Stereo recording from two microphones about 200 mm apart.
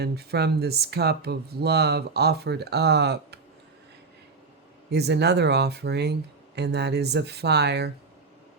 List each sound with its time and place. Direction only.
0.0 s speech: 55° right (ahead or behind)
4.9 s speech: 55° right (ahead or behind)